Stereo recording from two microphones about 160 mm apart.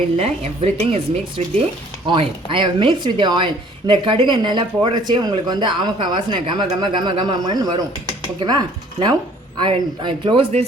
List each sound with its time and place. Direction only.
0.2 s a woman's voice: 40° right (ahead or behind)